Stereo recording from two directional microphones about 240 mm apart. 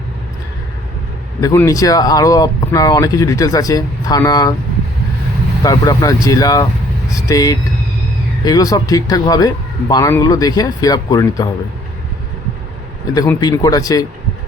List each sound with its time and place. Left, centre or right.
1.4 s speech: centre
5.6 s speech: centre
13.1 s speech: centre